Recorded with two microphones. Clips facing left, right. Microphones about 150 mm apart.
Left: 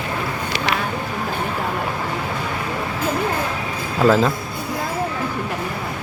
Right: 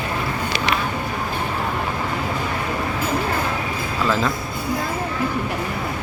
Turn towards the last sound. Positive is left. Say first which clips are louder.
# left 5 dB
turn(degrees=40)  # may be behind; listen again after turning